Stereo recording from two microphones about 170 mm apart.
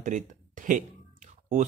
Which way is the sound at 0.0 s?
50° right (ahead or behind).